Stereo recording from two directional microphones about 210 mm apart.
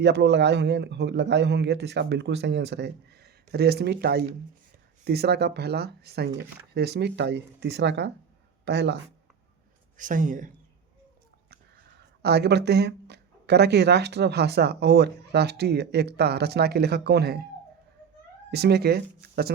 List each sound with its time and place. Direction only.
0.0 s a man's voice: 55° right (ahead or behind)
10.0 s speech: 40° right (ahead or behind)
12.2 s speech: 50° right (ahead or behind)
18.5 s speech: 50° right (ahead or behind)